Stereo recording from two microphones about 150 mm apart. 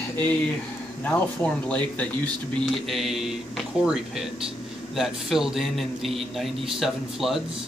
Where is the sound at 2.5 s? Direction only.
Centre (ahead or behind).